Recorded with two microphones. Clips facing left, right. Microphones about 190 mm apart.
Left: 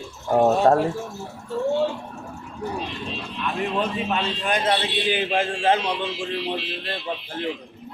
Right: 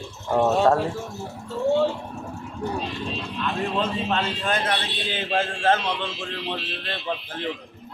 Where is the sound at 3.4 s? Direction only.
15° left (ahead or behind).